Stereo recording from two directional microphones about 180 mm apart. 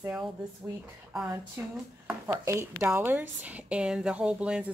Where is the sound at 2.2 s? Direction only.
15° right (ahead or behind).